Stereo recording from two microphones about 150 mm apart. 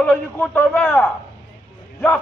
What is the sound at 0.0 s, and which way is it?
A man's voice, 10° left (ahead or behind).